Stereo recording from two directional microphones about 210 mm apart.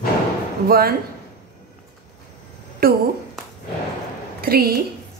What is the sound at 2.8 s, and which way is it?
Speech, 45° right (ahead or behind).